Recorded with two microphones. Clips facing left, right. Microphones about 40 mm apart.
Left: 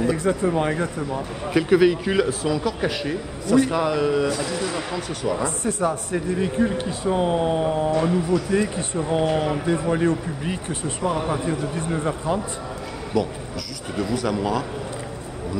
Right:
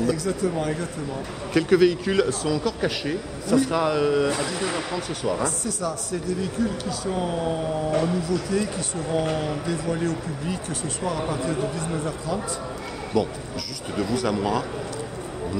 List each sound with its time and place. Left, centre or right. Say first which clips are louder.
0.0 s speech: left 3 dB; left
1.5 s a man's voice: left 1 dB; centre
3.7 s a man's voice: even; centre
4.3 s speech: left 1 dB; right
5.4 s a man's voice: left 4 dB; left
13.1 s a man's voice: even; centre